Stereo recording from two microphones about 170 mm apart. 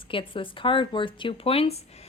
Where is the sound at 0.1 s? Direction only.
30° left (ahead or behind).